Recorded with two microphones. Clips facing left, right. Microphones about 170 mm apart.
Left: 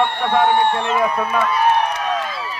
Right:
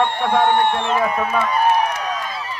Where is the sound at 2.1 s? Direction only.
80° left.